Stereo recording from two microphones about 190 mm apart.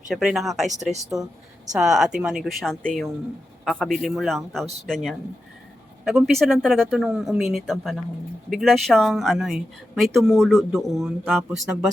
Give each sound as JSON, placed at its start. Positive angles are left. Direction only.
{"t": 0.1, "sound": "speech", "side_deg": 0}
{"t": 0.7, "sound": "speech", "side_deg": -40}
{"t": 1.1, "sound": "speech", "side_deg": 0}